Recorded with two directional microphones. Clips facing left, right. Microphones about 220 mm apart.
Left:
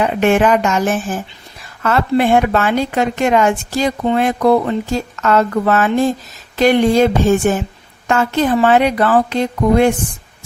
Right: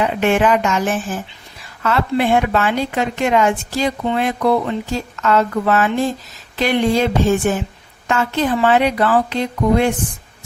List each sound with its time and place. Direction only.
0.0 s a woman's voice: 45° left (ahead or behind)